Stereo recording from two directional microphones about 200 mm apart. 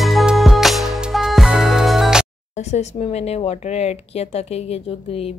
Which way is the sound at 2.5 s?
35° left (ahead or behind).